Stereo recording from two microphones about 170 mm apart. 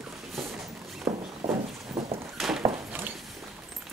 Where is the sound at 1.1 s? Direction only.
15° right (ahead or behind).